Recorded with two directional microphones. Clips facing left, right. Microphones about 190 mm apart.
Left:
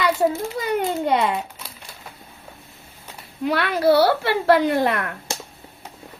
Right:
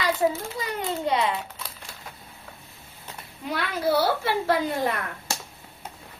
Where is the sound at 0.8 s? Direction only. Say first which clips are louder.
Left 4 dB; 55° left (ahead or behind).